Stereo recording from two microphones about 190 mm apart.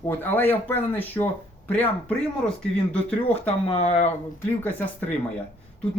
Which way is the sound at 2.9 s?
5° left (ahead or behind).